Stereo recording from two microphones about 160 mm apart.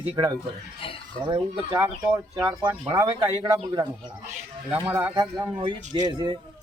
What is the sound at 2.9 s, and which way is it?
Speech, 25° right (ahead or behind).